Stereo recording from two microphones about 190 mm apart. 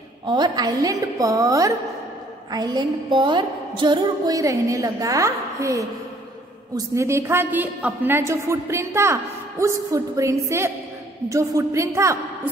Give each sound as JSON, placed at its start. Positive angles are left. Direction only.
{"t": 0.3, "sound": "music", "side_deg": -20}
{"t": 7.0, "sound": "a woman's voice", "side_deg": -15}